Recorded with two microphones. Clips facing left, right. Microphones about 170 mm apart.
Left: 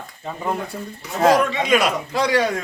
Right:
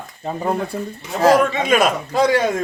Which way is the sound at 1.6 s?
50° right (ahead or behind).